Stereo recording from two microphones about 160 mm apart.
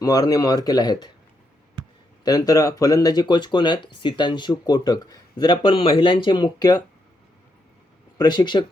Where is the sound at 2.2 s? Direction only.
25° left (ahead or behind).